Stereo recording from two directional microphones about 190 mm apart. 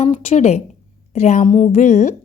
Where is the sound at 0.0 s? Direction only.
35° left (ahead or behind).